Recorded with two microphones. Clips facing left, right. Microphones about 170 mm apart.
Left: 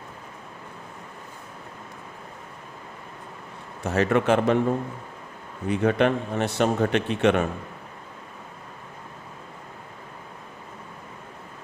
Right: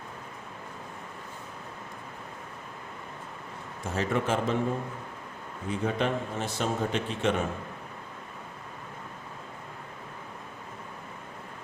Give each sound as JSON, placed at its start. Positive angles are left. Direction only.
{"t": 3.8, "sound": "a man's voice", "side_deg": 70}
{"t": 5.6, "sound": "a man's voice", "side_deg": 70}